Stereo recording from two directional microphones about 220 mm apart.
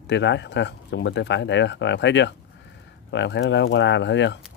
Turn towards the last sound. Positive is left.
turn(degrees=55)  # may be behind; listen again after turning